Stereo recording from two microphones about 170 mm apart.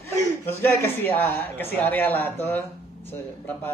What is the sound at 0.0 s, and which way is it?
Speech, 10° left (ahead or behind).